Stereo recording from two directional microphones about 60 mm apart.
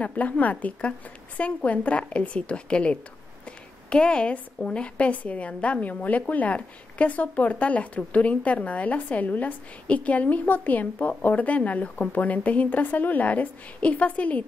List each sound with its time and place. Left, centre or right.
0.0 s a woman's voice: left
3.4 s a sound: centre
4.6 s a woman's voice: centre